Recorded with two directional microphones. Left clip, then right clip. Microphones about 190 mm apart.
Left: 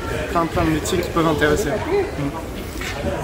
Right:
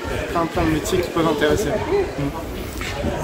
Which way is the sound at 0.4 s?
Centre (ahead or behind).